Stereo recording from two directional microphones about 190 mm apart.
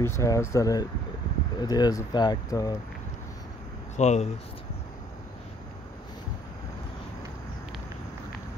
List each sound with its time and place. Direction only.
0.0 s speech: 15° left (ahead or behind)
3.9 s speech: 35° left (ahead or behind)